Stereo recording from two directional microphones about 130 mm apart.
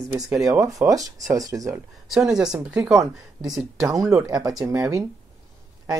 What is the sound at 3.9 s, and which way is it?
Speech, 25° right (ahead or behind).